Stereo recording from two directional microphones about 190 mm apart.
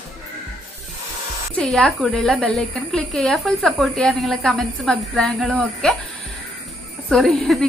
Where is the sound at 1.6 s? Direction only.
5° left (ahead or behind).